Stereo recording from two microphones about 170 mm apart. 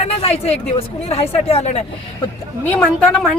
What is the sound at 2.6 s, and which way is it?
Speech, 10° left (ahead or behind).